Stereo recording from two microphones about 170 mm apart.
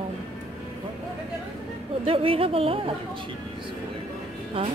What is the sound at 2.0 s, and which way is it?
Speech, 35° right (ahead or behind).